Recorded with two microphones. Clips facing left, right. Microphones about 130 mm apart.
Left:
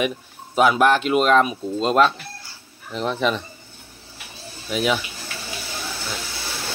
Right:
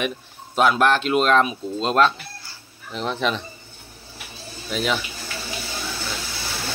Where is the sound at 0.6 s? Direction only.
5° left (ahead or behind).